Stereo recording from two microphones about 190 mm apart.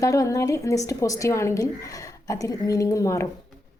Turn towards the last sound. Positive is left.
turn(degrees=15)  # may be behind; listen again after turning